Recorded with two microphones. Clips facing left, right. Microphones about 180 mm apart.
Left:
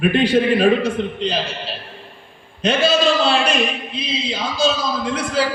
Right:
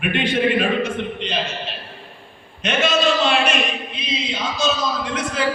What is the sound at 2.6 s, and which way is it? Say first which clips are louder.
A man's voice: left 3 dB; 35° left (ahead or behind).